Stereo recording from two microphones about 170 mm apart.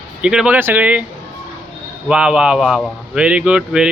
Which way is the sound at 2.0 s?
5° right (ahead or behind).